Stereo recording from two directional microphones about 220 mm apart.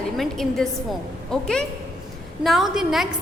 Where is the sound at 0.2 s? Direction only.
Centre (ahead or behind).